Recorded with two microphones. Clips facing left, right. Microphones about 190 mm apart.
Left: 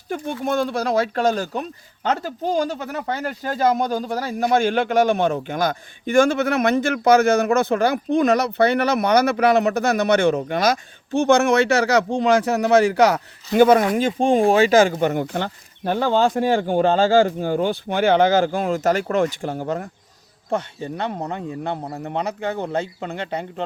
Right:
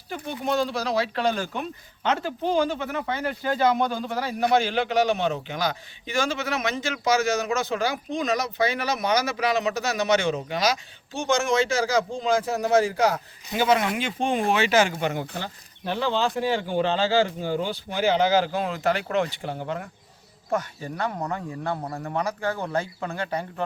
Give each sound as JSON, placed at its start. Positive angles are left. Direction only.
{"t": 0.1, "sound": "a man's voice", "side_deg": 50}
{"t": 13.5, "sound": "speech", "side_deg": 50}
{"t": 20.5, "sound": "speech", "side_deg": 25}